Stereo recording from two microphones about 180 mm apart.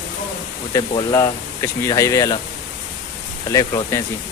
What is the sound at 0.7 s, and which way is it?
Speech, 20° left (ahead or behind).